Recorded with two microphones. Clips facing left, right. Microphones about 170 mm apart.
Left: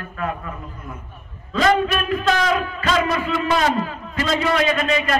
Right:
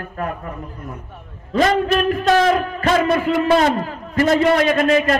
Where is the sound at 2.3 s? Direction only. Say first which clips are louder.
Right 5 dB; 45° right (ahead or behind).